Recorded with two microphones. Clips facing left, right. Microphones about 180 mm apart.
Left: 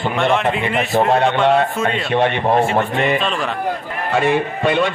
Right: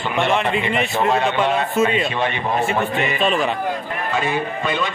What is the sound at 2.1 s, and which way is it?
Speech, 60° left (ahead or behind).